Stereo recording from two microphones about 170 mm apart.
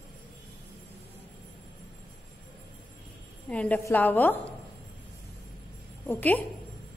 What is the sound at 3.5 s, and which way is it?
A woman's voice, 10° left (ahead or behind).